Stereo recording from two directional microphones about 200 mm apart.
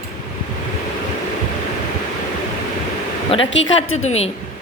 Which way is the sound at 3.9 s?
35° left (ahead or behind).